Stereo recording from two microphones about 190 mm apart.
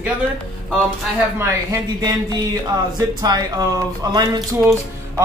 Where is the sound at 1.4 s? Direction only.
15° right (ahead or behind).